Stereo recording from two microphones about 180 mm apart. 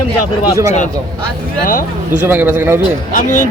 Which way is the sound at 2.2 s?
10° right (ahead or behind).